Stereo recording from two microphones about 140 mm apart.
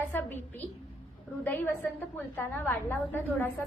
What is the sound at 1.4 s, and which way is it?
A woman's voice, 15° left (ahead or behind).